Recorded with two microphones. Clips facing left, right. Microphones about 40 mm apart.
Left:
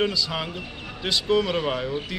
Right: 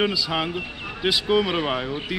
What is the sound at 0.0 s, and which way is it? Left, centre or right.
Speech, centre.